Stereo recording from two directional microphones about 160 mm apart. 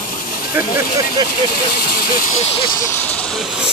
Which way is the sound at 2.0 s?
65° left (ahead or behind).